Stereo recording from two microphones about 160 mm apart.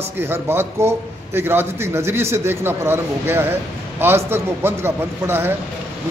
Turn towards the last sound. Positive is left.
turn(degrees=-15)  # may be behind; listen again after turning